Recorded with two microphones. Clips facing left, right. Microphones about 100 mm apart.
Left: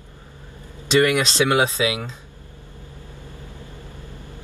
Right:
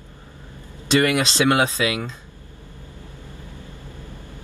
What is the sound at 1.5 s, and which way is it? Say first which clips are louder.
Speech: left 1 dB; 20° left (ahead or behind).